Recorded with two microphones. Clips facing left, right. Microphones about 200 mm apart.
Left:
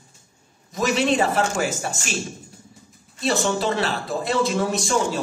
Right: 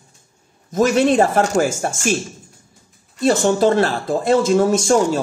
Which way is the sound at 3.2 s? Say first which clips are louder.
Right 7 dB; 45° right (ahead or behind).